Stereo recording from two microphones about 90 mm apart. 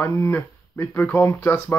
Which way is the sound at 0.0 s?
25° left (ahead or behind).